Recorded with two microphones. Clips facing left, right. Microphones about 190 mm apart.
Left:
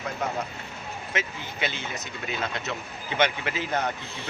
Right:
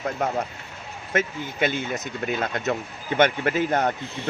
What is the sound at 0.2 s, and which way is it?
Speech, 50° right (ahead or behind).